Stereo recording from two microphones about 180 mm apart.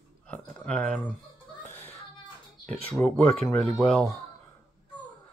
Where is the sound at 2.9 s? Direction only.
5° left (ahead or behind).